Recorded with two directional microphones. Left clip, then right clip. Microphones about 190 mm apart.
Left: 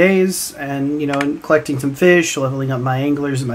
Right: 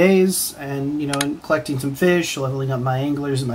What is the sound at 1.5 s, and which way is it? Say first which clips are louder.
Speech: left 7 dB; 20° left (ahead or behind).